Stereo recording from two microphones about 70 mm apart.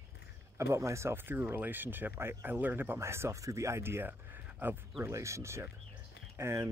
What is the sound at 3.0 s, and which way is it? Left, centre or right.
Speech, right.